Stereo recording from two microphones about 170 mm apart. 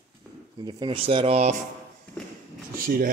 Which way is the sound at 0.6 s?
25° right (ahead or behind).